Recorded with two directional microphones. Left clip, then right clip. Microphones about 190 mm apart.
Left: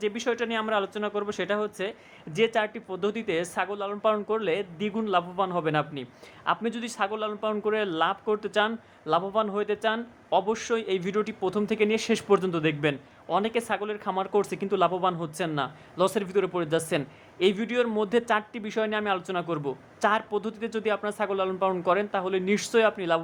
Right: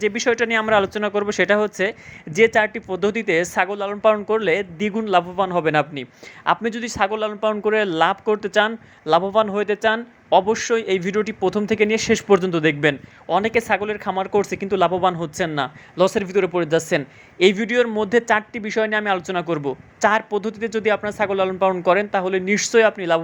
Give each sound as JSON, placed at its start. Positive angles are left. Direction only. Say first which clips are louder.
{"t": 0.0, "sound": "speech", "louder": "right 9 dB", "side_deg": -20}